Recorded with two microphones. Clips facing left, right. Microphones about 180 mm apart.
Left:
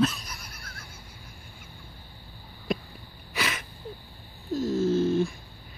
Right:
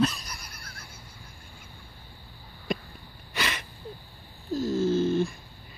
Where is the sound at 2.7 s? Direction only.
Centre (ahead or behind).